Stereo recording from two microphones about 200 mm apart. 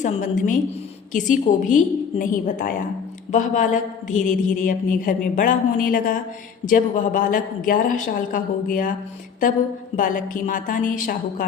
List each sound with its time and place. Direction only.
0.0 s a woman's voice: 40° left (ahead or behind)